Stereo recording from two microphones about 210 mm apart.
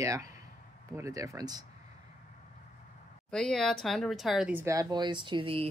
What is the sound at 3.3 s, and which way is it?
A woman's voice, 5° left (ahead or behind).